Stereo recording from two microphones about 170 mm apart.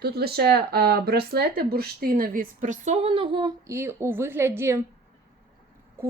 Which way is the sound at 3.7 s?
15° right (ahead or behind).